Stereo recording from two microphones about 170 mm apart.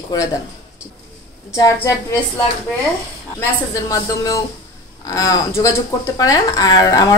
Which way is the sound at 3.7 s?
20° left (ahead or behind).